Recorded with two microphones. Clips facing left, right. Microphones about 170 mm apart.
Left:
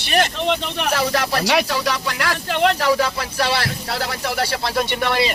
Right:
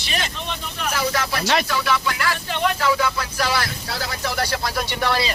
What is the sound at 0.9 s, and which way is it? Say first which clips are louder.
Speech: left 3 dB; 35° left (ahead or behind).